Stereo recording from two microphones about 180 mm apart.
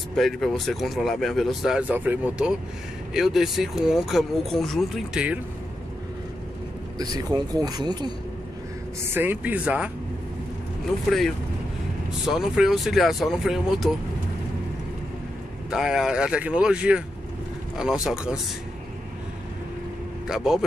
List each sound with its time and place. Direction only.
0.1 s speech: centre (ahead or behind)
7.0 s speech: 20° right (ahead or behind)
9.0 s speech: 10° right (ahead or behind)
11.1 s speech: centre (ahead or behind)
15.7 s speech: 5° right (ahead or behind)
20.2 s speech: 5° right (ahead or behind)